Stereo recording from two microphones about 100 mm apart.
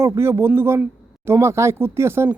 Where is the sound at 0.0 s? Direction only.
25° right (ahead or behind).